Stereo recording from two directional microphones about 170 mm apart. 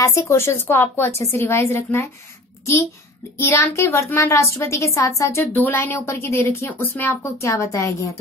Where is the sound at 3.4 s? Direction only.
15° left (ahead or behind).